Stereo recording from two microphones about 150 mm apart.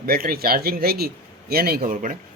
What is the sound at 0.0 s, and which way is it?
Speech, 75° right (ahead or behind).